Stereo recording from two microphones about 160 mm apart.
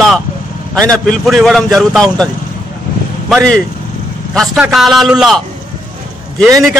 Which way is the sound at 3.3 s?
5° left (ahead or behind).